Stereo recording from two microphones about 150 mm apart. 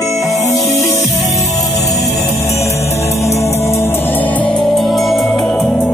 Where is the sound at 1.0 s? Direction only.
Centre (ahead or behind).